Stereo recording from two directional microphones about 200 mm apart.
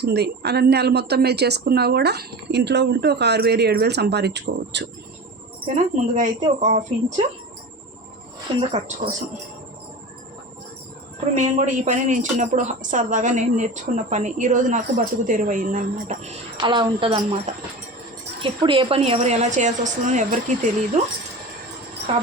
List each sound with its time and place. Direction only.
0.0 s a woman's voice: 55° right (ahead or behind)
5.6 s speech: 35° right (ahead or behind)
8.5 s speech: 30° right (ahead or behind)
11.3 s speech: 40° right (ahead or behind)
16.6 s speech: 25° right (ahead or behind)
22.1 s jingle bell: 35° right (ahead or behind)